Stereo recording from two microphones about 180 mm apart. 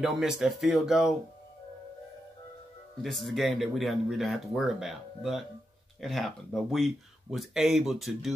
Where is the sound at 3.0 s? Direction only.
Centre (ahead or behind).